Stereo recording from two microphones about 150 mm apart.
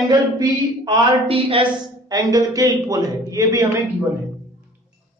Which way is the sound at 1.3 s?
40° right (ahead or behind).